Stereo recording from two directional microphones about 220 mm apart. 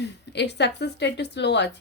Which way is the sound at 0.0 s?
50° left (ahead or behind).